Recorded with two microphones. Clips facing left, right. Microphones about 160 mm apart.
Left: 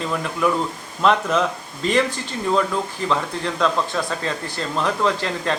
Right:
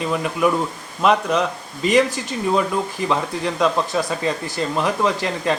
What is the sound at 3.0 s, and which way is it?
Speech, 15° right (ahead or behind).